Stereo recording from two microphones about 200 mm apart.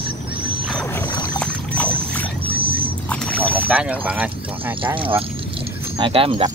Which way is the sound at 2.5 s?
25° right (ahead or behind).